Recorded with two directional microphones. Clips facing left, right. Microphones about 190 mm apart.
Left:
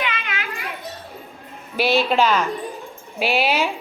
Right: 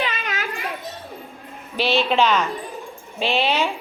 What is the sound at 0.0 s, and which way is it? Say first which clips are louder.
Children playing: right 1 dB; 40° right (ahead or behind).